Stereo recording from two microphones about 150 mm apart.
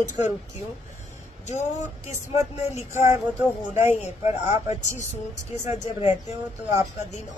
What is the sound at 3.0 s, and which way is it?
Speech, 15° right (ahead or behind).